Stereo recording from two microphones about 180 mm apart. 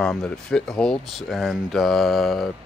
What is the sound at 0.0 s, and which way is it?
Speech, 5° left (ahead or behind).